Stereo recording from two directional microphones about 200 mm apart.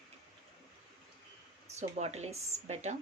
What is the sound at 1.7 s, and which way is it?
A woman's voice, 35° right (ahead or behind).